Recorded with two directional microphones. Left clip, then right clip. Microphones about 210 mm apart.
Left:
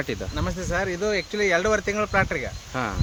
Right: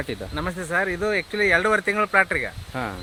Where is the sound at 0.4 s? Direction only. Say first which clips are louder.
Right 3 dB; 10° right (ahead or behind).